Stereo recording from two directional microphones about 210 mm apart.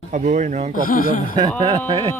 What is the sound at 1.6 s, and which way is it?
Speech, 20° right (ahead or behind).